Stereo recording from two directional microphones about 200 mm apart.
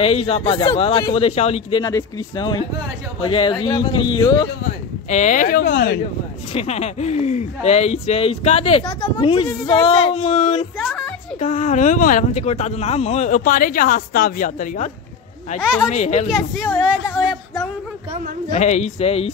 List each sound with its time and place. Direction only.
0.0 s a woman's voice: 30° left (ahead or behind)
5.1 s speech: 40° left (ahead or behind); by 5.9 s 55° left (ahead or behind)
6.5 s a woman's voice: 30° left (ahead or behind)
10.8 s music: centre (ahead or behind)
11.3 s speech: 40° left (ahead or behind)
15.6 s a woman's voice: centre (ahead or behind)
15.9 s speech: 35° left (ahead or behind)
16.3 s speech: centre (ahead or behind)
18.5 s speech: 35° left (ahead or behind)